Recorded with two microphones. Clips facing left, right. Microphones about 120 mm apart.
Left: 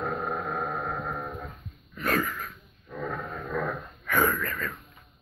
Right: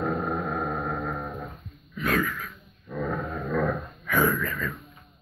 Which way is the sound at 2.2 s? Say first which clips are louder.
Right 2 dB; 5° left (ahead or behind).